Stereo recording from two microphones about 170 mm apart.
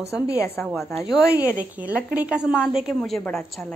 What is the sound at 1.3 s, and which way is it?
Speech, 55° right (ahead or behind).